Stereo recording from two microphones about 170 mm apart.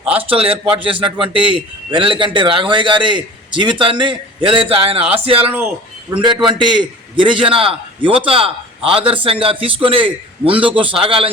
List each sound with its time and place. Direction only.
0.3 s a man's voice: 35° right (ahead or behind)
5.5 s speech: 10° right (ahead or behind)
6.1 s a man's voice: 25° right (ahead or behind)